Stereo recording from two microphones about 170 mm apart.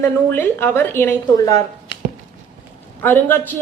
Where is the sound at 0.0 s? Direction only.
10° left (ahead or behind).